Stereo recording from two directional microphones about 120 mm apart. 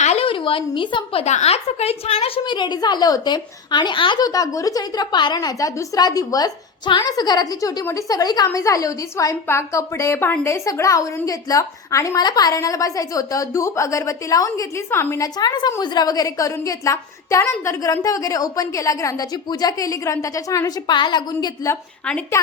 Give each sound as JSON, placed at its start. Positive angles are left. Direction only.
{"t": 0.0, "sound": "a sound", "side_deg": 65}
{"t": 0.3, "sound": "a woman's voice", "side_deg": 45}
{"t": 1.2, "sound": "a woman's voice", "side_deg": 70}
{"t": 2.4, "sound": "a woman's voice", "side_deg": 40}
{"t": 15.4, "sound": "a woman's voice", "side_deg": 35}